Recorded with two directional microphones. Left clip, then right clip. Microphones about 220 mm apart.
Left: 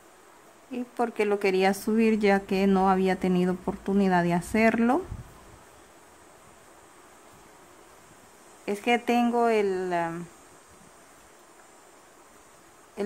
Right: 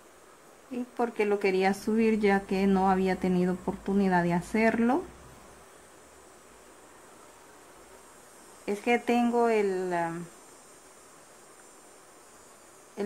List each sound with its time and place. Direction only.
0.7 s speech: 10° left (ahead or behind)
8.6 s speech: 10° left (ahead or behind)